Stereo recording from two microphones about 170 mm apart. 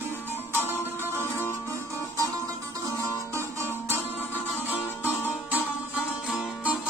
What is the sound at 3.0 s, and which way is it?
Music, 15° right (ahead or behind).